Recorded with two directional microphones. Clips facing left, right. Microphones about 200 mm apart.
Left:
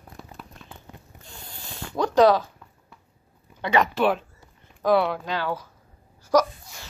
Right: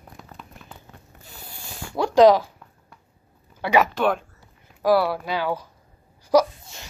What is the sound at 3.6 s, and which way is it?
Speech, 10° right (ahead or behind).